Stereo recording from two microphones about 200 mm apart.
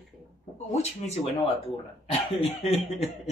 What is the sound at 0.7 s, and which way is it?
Speech, 30° left (ahead or behind).